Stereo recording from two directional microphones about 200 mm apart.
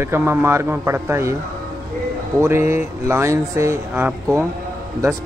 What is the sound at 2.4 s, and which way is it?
Speech, 10° right (ahead or behind).